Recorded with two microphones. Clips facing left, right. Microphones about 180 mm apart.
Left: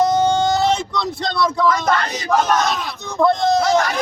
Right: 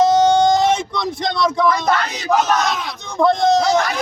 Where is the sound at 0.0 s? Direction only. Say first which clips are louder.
Right 3 dB; 20° right (ahead or behind).